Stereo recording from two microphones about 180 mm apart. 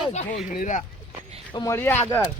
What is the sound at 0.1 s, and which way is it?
Speech, 45° left (ahead or behind).